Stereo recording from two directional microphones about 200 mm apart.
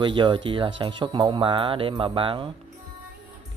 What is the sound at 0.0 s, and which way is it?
Speech, 25° right (ahead or behind).